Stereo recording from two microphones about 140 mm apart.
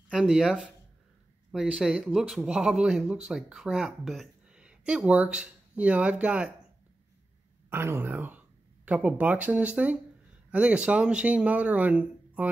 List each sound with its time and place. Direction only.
0.1 s speech: 5° right (ahead or behind)
7.7 s speech: 15° right (ahead or behind)